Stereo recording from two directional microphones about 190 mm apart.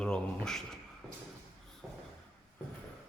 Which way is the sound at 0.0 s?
5° left (ahead or behind).